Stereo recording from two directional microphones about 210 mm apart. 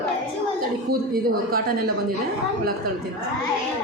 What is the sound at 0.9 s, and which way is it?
Speech, 45° right (ahead or behind).